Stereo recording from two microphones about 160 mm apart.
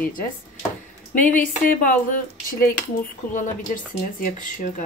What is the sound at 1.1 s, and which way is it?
Speech, 55° left (ahead or behind).